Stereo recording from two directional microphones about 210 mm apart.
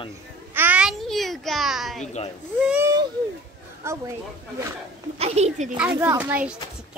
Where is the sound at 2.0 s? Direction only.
35° left (ahead or behind).